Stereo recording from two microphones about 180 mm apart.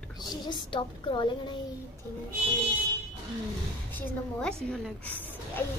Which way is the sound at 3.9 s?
5° left (ahead or behind).